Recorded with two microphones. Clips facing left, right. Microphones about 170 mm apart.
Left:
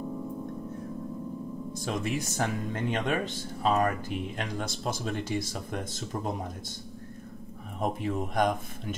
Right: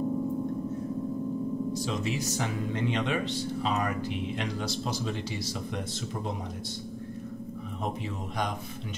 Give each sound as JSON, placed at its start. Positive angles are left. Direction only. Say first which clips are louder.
{"t": 1.7, "sound": "speech", "louder": "right 1 dB", "side_deg": 50}
{"t": 7.8, "sound": "speech", "louder": "left 6 dB", "side_deg": 50}